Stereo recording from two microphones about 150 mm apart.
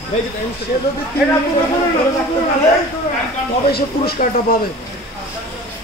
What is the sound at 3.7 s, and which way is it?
Speech, 90° left.